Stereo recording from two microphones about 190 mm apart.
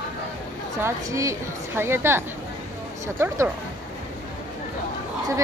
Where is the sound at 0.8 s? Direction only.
15° right (ahead or behind).